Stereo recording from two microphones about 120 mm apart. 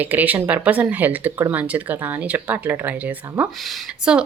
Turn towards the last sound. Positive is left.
turn(degrees=-10)  # may be behind; listen again after turning